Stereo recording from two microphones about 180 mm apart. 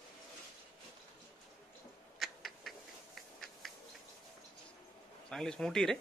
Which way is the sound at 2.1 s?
Centre (ahead or behind).